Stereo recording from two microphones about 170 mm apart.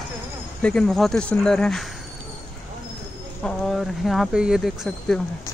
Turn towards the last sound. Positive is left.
turn(degrees=0)  # may be behind; listen again after turning